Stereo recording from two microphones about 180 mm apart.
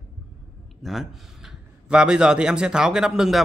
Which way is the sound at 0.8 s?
Centre (ahead or behind).